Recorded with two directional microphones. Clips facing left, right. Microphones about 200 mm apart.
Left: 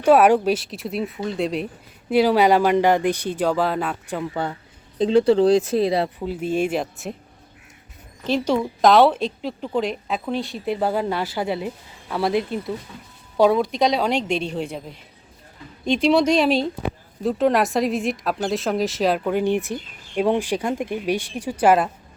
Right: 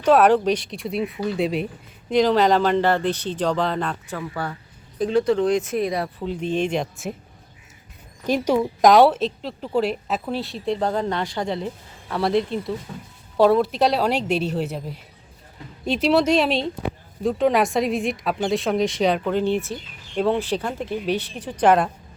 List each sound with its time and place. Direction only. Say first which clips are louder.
0.0 s a woman's voice: left 1 dB; 10° left (ahead or behind)
4.4 s speech: left 3 dB; 20° left (ahead or behind)
6.1 s a woman's voice: left 1 dB; 5° left (ahead or behind)
8.3 s a woman's voice: right 1 dB; 10° right (ahead or behind)
9.1 s a woman's voice: even; centre (ahead or behind)